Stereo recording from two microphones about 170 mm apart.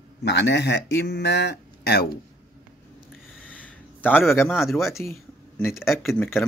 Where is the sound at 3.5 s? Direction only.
10° left (ahead or behind).